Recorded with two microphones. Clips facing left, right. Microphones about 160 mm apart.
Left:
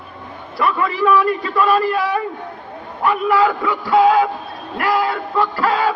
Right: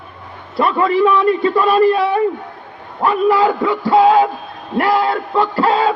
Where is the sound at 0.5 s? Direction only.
30° right (ahead or behind).